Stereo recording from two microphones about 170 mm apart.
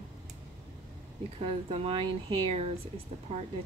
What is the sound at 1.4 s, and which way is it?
Speech, 35° right (ahead or behind).